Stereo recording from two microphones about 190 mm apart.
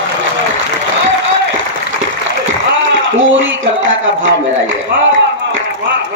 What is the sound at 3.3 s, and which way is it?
Speech, 80° right.